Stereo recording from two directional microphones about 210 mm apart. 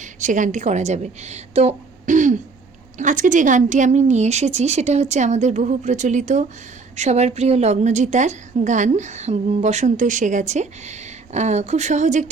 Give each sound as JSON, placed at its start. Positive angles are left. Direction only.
{"t": 0.0, "sound": "a woman's voice", "side_deg": -35}